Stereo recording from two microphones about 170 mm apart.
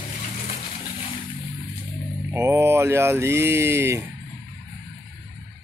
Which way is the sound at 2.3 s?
15° right (ahead or behind).